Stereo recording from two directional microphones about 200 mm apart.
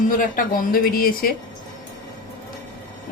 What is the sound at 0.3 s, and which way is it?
Speech, 45° left (ahead or behind).